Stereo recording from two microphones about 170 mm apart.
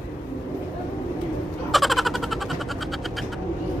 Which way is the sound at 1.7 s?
Centre (ahead or behind).